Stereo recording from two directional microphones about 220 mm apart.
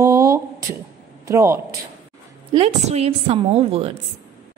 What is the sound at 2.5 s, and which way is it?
A woman's voice, 30° right (ahead or behind).